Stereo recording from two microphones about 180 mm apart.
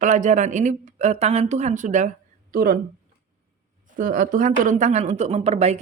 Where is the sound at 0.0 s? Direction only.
45° right (ahead or behind).